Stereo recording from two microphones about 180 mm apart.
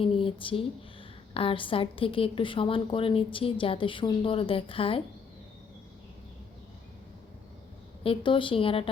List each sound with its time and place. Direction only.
0.0 s a woman's voice: 30° left (ahead or behind)
8.0 s a woman's voice: 30° left (ahead or behind)